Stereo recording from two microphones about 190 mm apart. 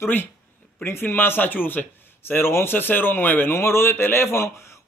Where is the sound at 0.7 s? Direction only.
10° left (ahead or behind).